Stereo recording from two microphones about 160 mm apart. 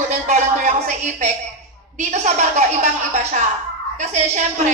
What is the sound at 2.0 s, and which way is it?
A woman's voice, 45° right (ahead or behind).